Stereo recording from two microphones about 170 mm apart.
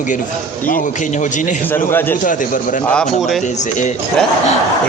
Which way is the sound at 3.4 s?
45° left (ahead or behind).